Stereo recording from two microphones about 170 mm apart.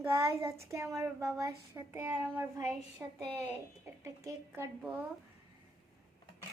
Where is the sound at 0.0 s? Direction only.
15° right (ahead or behind).